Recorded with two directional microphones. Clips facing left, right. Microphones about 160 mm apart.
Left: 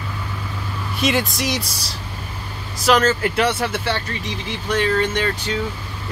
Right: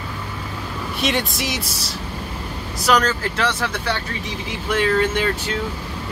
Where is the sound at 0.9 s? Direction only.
Centre (ahead or behind).